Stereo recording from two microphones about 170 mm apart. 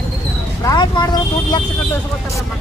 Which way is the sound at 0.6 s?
25° left (ahead or behind).